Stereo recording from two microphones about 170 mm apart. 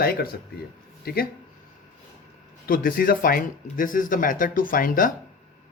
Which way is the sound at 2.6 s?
55° left (ahead or behind).